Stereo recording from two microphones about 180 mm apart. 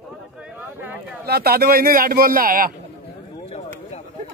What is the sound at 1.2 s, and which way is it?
Speech, 60° right (ahead or behind).